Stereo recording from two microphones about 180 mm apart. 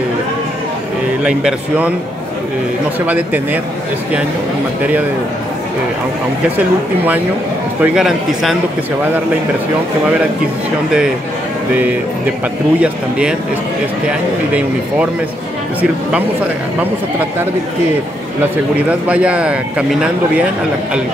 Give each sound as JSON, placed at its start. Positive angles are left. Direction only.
{"t": 1.2, "sound": "speech", "side_deg": -5}
{"t": 7.8, "sound": "speech", "side_deg": -5}
{"t": 14.0, "sound": "speech", "side_deg": -5}
{"t": 18.9, "sound": "speech", "side_deg": -5}